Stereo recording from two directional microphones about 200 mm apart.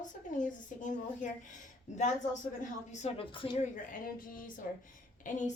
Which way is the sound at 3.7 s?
45° left (ahead or behind).